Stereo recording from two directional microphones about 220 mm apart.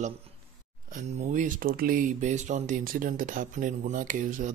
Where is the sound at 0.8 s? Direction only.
35° right (ahead or behind).